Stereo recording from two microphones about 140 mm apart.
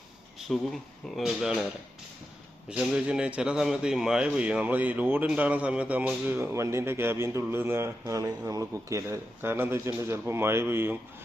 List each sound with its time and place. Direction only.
0.3 s speech: centre (ahead or behind)
2.6 s speech: 5° right (ahead or behind)